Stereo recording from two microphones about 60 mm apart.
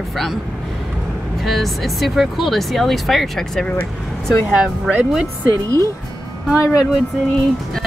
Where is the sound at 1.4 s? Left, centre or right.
Centre.